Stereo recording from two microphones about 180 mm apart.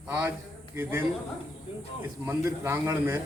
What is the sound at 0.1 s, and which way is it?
Speech, 10° right (ahead or behind).